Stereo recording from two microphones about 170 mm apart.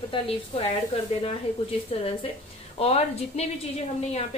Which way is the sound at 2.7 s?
40° left (ahead or behind).